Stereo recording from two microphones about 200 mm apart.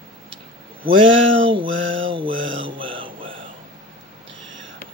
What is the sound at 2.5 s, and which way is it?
Mantra, 25° right (ahead or behind).